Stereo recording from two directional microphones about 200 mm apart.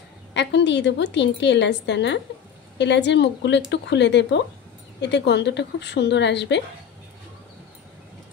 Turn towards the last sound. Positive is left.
turn(degrees=60)  # may be behind; listen again after turning